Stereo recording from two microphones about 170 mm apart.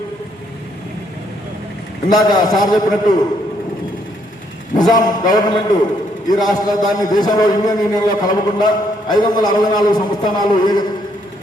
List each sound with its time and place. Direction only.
2.0 s a man's voice: 25° left (ahead or behind)
4.8 s a man's voice: 25° left (ahead or behind)